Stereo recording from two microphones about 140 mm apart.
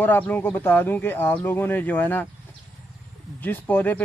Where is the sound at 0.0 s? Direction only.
15° left (ahead or behind).